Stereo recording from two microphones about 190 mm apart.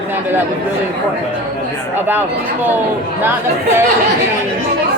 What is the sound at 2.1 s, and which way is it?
Speech, 10° right (ahead or behind).